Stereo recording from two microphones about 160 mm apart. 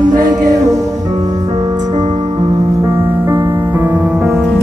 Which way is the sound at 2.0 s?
40° right (ahead or behind).